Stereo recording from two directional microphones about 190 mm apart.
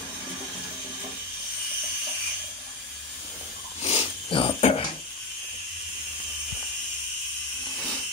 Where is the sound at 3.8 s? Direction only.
30° left (ahead or behind).